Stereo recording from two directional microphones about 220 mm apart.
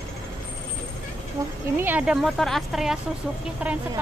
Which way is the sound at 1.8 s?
5° right (ahead or behind).